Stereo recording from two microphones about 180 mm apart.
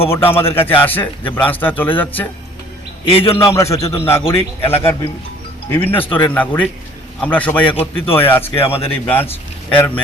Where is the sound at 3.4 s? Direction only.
15° left (ahead or behind).